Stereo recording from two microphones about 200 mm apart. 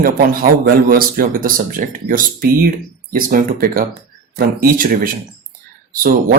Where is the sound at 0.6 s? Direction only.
45° right (ahead or behind).